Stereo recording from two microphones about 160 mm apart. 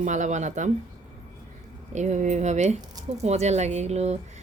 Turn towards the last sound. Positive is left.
turn(degrees=-45)  # may be behind; listen again after turning